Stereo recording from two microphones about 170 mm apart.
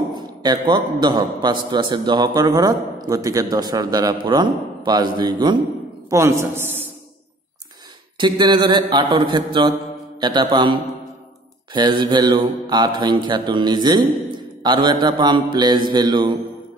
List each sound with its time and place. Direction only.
0.1 s a man's voice: 25° right (ahead or behind)
8.2 s a man's voice: 25° right (ahead or behind)
11.7 s a man's voice: 25° right (ahead or behind)